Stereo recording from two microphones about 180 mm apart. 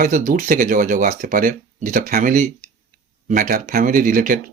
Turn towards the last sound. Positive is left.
turn(degrees=-50)  # may be behind; listen again after turning